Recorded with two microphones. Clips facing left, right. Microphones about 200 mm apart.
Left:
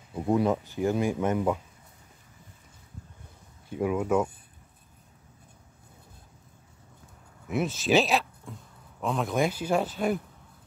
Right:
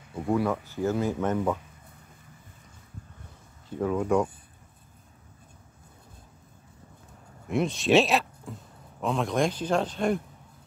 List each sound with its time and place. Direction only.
0.3 s speech: 20° left (ahead or behind)
3.6 s speech: 10° left (ahead or behind)
7.4 s speech: 5° left (ahead or behind)